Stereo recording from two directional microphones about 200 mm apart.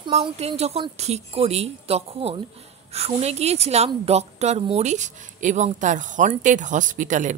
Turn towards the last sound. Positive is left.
turn(degrees=-40)  # may be behind; listen again after turning